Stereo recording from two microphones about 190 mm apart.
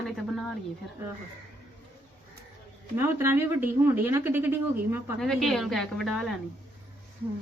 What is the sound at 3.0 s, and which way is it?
A woman's voice, 15° right (ahead or behind).